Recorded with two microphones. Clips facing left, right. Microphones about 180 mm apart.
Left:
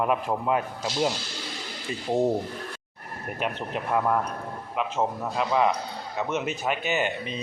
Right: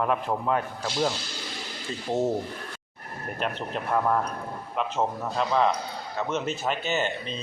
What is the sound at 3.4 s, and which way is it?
A man's voice, 10° left (ahead or behind).